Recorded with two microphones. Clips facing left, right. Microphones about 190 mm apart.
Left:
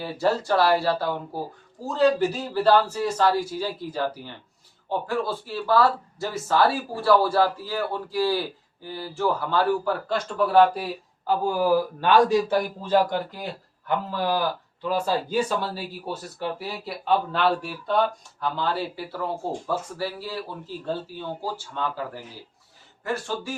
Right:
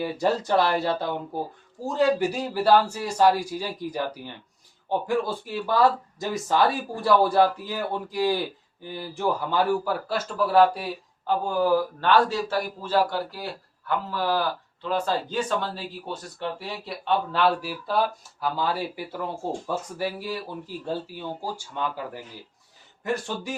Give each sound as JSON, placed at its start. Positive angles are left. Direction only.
{"t": 0.0, "sound": "speech", "side_deg": -15}
{"t": 11.4, "sound": "a man's voice", "side_deg": 10}